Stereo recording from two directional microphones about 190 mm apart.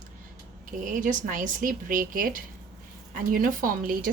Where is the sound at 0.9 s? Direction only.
45° right (ahead or behind).